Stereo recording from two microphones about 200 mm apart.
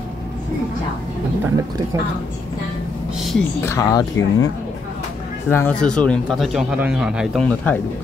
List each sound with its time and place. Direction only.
3.2 s a sound: centre (ahead or behind)
3.6 s speech: 15° left (ahead or behind)
5.5 s speech: 10° left (ahead or behind)